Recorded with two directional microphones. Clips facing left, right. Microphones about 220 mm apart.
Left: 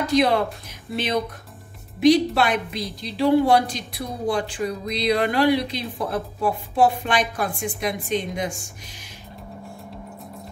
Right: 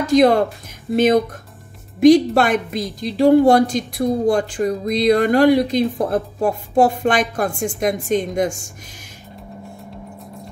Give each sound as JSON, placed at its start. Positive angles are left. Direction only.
{"t": 0.0, "sound": "a woman's voice", "side_deg": -45}